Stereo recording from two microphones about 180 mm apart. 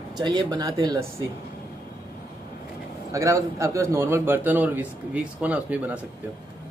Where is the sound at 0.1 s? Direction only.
20° right (ahead or behind).